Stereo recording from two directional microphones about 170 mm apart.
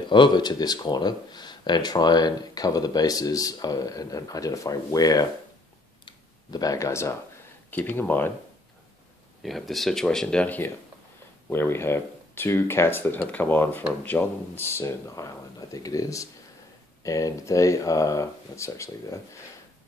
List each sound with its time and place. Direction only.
0.1 s speech: 25° left (ahead or behind)
6.0 s a sound: 20° left (ahead or behind)
7.7 s speech: 10° left (ahead or behind)
9.4 s speech: centre (ahead or behind); by 19.1 s 15° left (ahead or behind)